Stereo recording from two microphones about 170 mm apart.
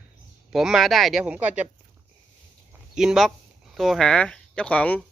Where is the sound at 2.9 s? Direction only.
Centre (ahead or behind).